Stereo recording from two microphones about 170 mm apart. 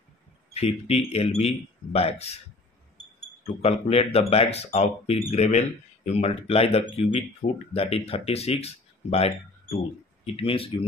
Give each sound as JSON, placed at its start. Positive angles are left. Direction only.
{"t": 0.5, "sound": "speech", "side_deg": 40}
{"t": 3.6, "sound": "speech", "side_deg": 35}